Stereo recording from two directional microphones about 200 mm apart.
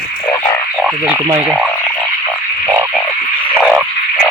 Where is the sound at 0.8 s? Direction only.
5° right (ahead or behind).